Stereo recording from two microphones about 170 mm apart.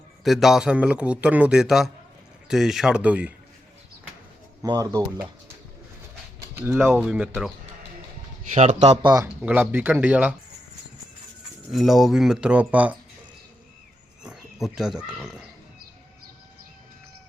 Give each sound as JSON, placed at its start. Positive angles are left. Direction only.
{"t": 0.3, "sound": "a man's voice", "side_deg": 0}
{"t": 4.6, "sound": "speech", "side_deg": -20}
{"t": 6.6, "sound": "speech", "side_deg": -15}
{"t": 8.5, "sound": "speech", "side_deg": -45}
{"t": 9.0, "sound": "speech", "side_deg": -25}
{"t": 9.2, "sound": "speech", "side_deg": -10}
{"t": 11.7, "sound": "a man's voice", "side_deg": 0}
{"t": 14.3, "sound": "speech", "side_deg": -5}